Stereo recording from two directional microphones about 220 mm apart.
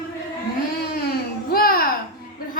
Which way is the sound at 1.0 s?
45° left (ahead or behind).